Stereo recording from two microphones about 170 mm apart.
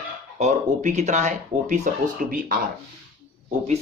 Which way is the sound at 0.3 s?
40° right (ahead or behind).